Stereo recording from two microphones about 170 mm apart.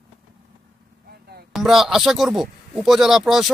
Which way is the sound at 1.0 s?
70° right (ahead or behind).